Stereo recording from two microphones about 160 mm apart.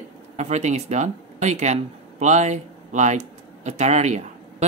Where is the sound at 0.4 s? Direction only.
45° right (ahead or behind).